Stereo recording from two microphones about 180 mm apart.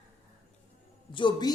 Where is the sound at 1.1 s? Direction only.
25° left (ahead or behind).